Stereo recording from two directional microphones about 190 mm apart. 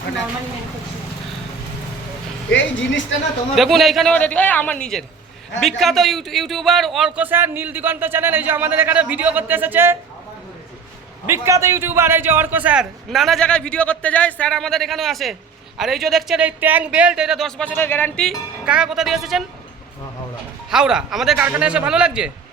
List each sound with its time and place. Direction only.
2.5 s speech: 75° left (ahead or behind)
3.5 s a man's voice: centre (ahead or behind)
11.3 s a man's voice: 15° right (ahead or behind)
20.7 s a man's voice: 5° right (ahead or behind)